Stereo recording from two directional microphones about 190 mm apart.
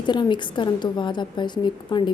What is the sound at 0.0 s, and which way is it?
A woman's voice, 25° left (ahead or behind).